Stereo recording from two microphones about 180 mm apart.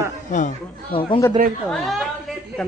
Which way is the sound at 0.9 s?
30° left (ahead or behind).